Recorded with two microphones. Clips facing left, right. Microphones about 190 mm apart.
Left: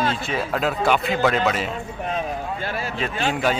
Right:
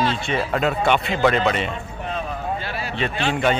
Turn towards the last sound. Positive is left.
turn(degrees=0)  # may be behind; listen again after turning